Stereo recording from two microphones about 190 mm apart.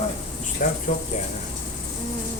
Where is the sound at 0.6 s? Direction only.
45° left (ahead or behind).